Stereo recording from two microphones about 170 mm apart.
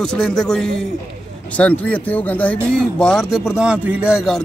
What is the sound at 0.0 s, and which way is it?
Speech, 5° left (ahead or behind).